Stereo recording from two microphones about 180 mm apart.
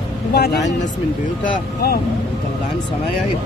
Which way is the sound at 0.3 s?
60° left (ahead or behind).